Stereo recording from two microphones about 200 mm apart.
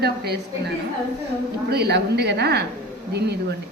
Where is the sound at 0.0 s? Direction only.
55° right (ahead or behind).